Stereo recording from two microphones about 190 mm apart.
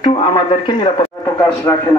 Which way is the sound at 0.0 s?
25° left (ahead or behind).